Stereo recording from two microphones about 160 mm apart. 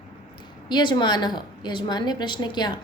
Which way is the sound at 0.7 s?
30° left (ahead or behind).